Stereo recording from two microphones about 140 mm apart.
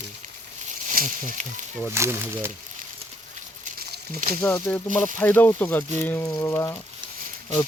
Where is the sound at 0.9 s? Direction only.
65° right (ahead or behind).